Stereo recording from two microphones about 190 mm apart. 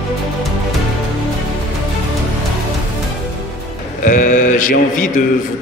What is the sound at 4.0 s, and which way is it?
Mantra, 45° left (ahead or behind).